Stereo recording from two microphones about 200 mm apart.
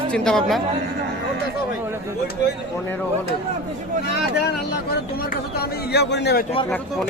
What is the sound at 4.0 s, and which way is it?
Speech, 50° left (ahead or behind).